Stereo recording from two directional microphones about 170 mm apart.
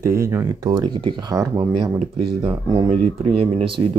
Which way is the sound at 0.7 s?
25° right (ahead or behind).